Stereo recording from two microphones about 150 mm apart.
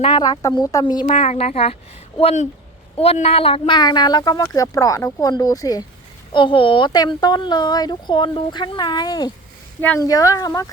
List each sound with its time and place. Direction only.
0.0 s speech: 30° left (ahead or behind)
1.1 s a woman's voice: 45° left (ahead or behind)
3.0 s speech: 40° left (ahead or behind); by 10.7 s 20° left (ahead or behind)